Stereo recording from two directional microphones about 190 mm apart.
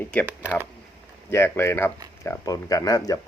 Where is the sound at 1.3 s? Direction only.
10° left (ahead or behind).